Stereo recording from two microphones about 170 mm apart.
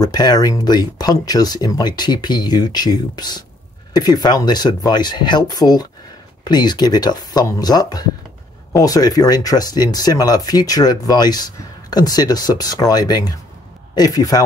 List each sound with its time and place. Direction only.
0.0 s speech: 25° left (ahead or behind)